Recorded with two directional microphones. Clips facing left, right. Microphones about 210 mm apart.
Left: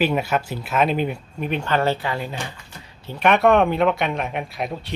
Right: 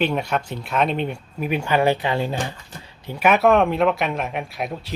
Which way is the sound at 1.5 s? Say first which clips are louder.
Right 2 dB; 10° right (ahead or behind).